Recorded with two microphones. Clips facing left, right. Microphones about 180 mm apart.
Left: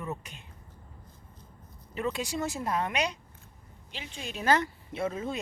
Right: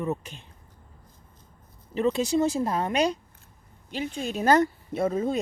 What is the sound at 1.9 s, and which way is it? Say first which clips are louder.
A woman's voice: right 8 dB; 25° right (ahead or behind).